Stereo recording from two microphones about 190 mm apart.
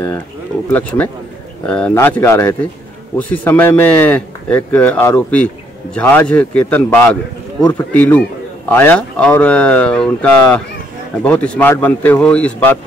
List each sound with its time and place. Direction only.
0.7 s speech: 10° left (ahead or behind)